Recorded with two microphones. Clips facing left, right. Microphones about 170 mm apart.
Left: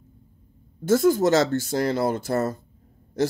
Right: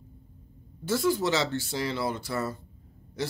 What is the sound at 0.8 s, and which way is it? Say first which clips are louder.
Speech: left 7 dB; 45° left (ahead or behind).